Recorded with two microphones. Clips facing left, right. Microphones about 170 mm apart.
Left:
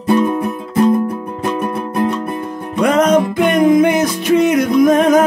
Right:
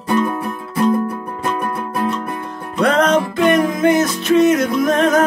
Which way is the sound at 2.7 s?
10° left (ahead or behind).